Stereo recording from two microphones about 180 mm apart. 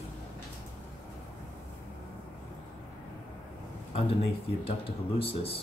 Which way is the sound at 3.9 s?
30° left (ahead or behind).